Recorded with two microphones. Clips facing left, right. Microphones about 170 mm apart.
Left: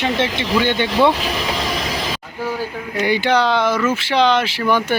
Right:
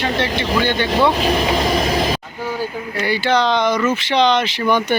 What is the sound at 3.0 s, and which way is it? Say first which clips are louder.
Speech: left 1 dB; 15° left (ahead or behind).